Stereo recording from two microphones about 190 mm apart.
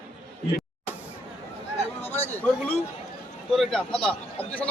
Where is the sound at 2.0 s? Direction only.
35° left (ahead or behind).